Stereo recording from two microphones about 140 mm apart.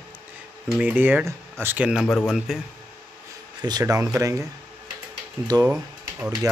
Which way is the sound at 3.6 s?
30° right (ahead or behind).